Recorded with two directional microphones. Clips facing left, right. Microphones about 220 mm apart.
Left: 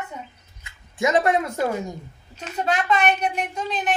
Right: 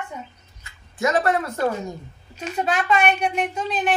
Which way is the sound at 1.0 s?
15° left (ahead or behind).